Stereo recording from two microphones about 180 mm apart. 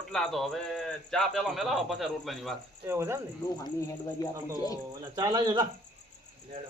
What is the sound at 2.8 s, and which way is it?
Speech, 15° right (ahead or behind).